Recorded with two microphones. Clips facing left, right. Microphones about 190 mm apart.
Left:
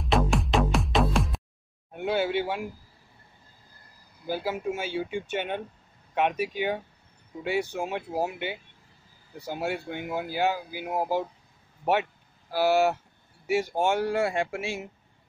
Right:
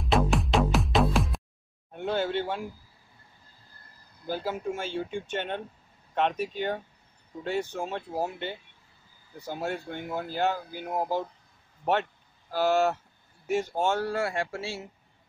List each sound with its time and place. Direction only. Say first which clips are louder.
0.0 s music: even; centre (ahead or behind)
1.9 s a sound: left 2 dB; 10° left (ahead or behind)
4.2 s speech: left 2 dB; 5° left (ahead or behind)